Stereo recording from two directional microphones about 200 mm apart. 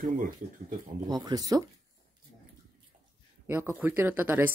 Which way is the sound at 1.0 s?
20° right (ahead or behind).